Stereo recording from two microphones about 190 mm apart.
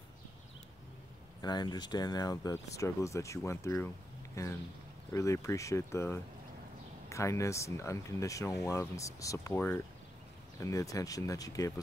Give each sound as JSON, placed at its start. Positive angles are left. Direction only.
{"t": 1.4, "sound": "speech", "side_deg": 20}